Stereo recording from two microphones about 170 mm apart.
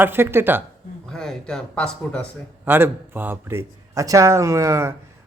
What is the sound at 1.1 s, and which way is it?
A man's voice, 5° left (ahead or behind).